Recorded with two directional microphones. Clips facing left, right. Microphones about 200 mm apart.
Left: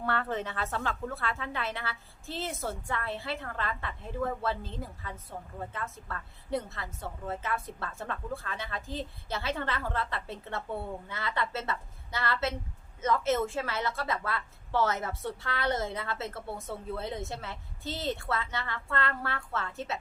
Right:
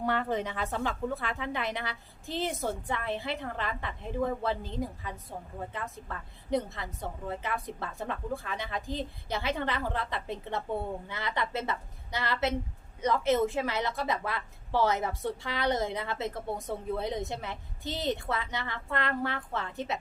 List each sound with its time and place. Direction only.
0.0 s a woman's voice: 15° right (ahead or behind)